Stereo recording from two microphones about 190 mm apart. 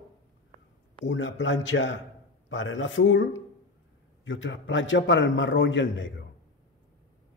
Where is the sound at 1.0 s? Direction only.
75° left (ahead or behind).